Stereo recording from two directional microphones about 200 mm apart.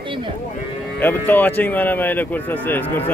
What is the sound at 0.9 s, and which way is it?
Speech, 10° left (ahead or behind).